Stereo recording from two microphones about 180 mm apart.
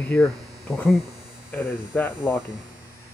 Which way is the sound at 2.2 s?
5° right (ahead or behind).